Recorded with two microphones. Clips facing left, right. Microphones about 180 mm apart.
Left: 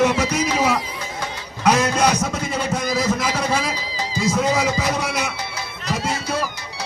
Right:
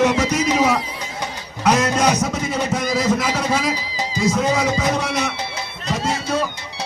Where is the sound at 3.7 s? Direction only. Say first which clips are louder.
Right 1 dB; 15° right (ahead or behind).